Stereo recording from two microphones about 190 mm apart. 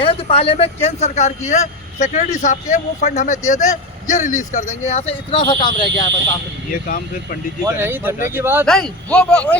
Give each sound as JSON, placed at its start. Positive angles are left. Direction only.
{"t": 0.0, "sound": "a man's voice", "side_deg": 30}
{"t": 6.8, "sound": "speech", "side_deg": 50}
{"t": 7.6, "sound": "speech", "side_deg": -10}
{"t": 8.6, "sound": "speech", "side_deg": 5}